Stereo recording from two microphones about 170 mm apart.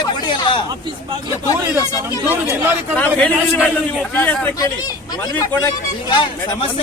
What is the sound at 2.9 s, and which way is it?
A man's voice, 10° left (ahead or behind).